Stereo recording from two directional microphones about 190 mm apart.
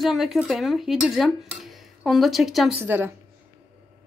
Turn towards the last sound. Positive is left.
turn(degrees=-10)  # may be behind; listen again after turning